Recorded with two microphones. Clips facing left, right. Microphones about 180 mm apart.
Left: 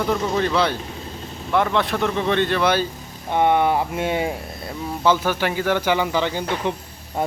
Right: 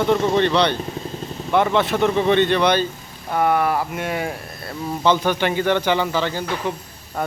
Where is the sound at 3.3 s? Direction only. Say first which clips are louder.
Left 1 dB; 25° left (ahead or behind).